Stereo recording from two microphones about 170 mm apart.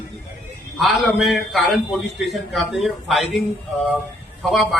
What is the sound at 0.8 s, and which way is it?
A man's voice, centre (ahead or behind).